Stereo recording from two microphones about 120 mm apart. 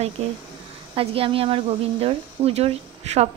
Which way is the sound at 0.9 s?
50° right (ahead or behind).